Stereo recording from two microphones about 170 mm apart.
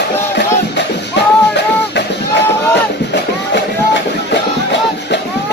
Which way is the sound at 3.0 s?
90° left.